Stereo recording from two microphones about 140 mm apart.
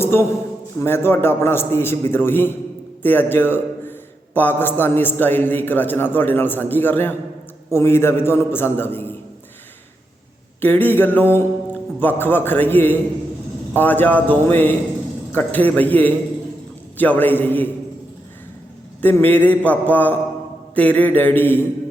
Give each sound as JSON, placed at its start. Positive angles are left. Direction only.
{"t": 0.0, "sound": "a man's voice", "side_deg": 20}
{"t": 10.6, "sound": "a man's voice", "side_deg": 15}
{"t": 19.0, "sound": "a man's voice", "side_deg": 15}